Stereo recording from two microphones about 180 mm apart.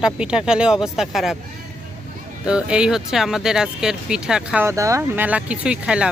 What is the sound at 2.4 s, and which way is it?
Speech, 5° right (ahead or behind).